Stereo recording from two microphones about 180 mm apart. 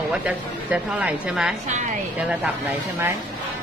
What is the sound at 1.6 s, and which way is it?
Speech, 40° right (ahead or behind).